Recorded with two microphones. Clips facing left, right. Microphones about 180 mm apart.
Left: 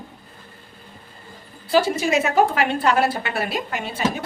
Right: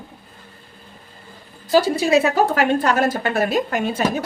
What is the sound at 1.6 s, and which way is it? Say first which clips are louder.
A woman's voice: right 2 dB; 40° right (ahead or behind).